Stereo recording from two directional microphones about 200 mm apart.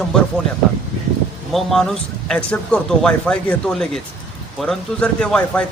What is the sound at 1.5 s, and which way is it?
A man's voice, centre (ahead or behind).